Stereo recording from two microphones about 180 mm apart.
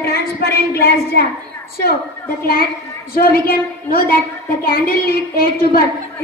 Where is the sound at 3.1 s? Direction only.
55° left (ahead or behind).